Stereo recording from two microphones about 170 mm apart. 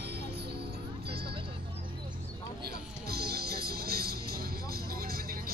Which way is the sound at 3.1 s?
65° right (ahead or behind).